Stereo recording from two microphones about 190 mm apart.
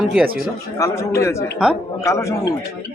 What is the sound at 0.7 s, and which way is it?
Speech, 15° left (ahead or behind).